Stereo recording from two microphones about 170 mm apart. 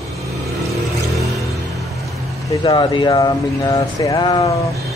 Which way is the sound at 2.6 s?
25° left (ahead or behind).